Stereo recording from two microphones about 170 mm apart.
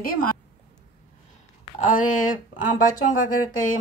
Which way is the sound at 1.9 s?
50° left (ahead or behind).